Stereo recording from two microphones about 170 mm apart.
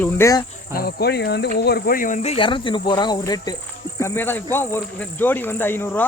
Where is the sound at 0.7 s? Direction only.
70° left (ahead or behind); by 1.5 s 90° left.